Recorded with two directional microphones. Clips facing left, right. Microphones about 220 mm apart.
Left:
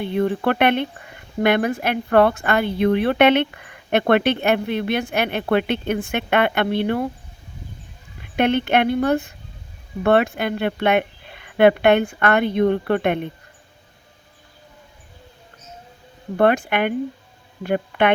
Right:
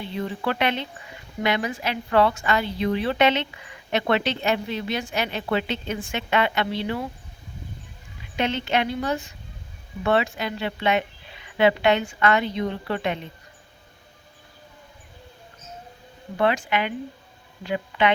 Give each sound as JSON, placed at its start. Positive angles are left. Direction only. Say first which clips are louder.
{"t": 0.0, "sound": "speech", "louder": "left 8 dB", "side_deg": 55}
{"t": 8.2, "sound": "speech", "louder": "left 7 dB", "side_deg": 60}
{"t": 16.4, "sound": "speech", "louder": "left 5 dB", "side_deg": 55}